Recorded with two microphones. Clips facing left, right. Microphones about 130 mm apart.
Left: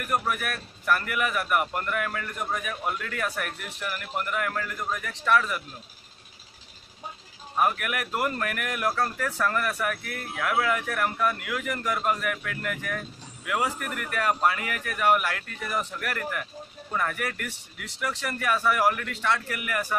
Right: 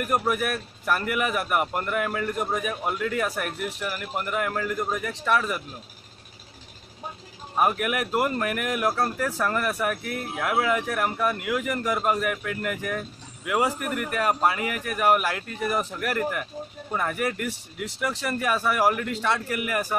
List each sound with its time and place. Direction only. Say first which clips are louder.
0.1 s speech: right 2 dB; 15° right (ahead or behind)
7.5 s speech: right 2 dB; 20° right (ahead or behind)
15.7 s speech: right 2 dB; 35° right (ahead or behind)
16.0 s speech: right 5 dB; 20° right (ahead or behind)